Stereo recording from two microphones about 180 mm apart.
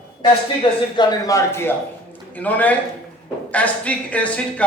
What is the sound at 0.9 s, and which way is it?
A man's voice, 15° left (ahead or behind).